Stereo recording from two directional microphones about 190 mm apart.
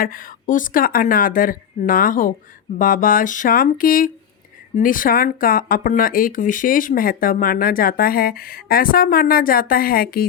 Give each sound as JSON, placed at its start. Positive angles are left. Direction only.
{"t": 0.0, "sound": "speech", "side_deg": 45}